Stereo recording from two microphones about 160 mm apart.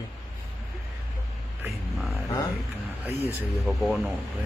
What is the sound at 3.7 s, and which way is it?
Speech, centre (ahead or behind).